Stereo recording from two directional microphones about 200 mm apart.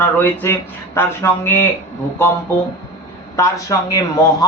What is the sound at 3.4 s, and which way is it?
Speech, 15° left (ahead or behind).